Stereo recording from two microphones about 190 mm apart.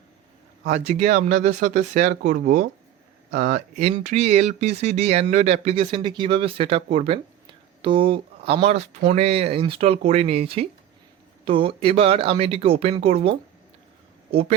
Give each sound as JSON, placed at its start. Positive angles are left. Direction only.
{"t": 0.6, "sound": "speech", "side_deg": -40}